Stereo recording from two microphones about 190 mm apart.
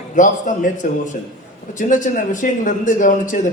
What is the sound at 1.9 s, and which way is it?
A man's voice, 45° left (ahead or behind).